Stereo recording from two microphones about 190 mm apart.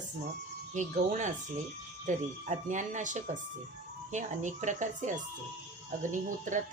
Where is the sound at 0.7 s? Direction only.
40° right (ahead or behind).